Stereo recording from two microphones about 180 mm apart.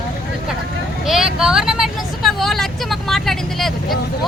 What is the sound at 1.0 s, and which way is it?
Speech, centre (ahead or behind).